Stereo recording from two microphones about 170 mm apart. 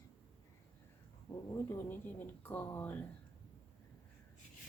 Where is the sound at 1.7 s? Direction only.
10° left (ahead or behind).